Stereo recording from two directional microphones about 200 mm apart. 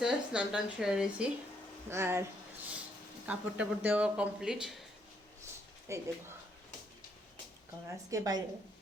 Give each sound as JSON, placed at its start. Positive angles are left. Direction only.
{"t": 0.0, "sound": "a woman's voice", "side_deg": -5}
{"t": 3.2, "sound": "speech", "side_deg": -5}
{"t": 5.9, "sound": "a woman's voice", "side_deg": -15}
{"t": 7.9, "sound": "a woman's voice", "side_deg": -15}